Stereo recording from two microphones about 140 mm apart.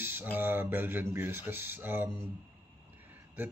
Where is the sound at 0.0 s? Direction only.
15° right (ahead or behind).